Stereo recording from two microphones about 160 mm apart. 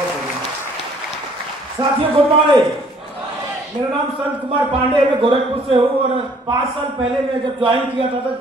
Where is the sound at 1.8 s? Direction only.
20° right (ahead or behind).